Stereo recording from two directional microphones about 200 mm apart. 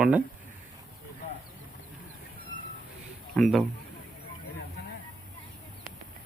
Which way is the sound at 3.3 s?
Centre (ahead or behind).